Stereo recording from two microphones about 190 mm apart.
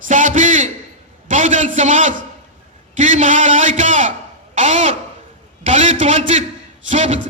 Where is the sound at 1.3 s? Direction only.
40° right (ahead or behind).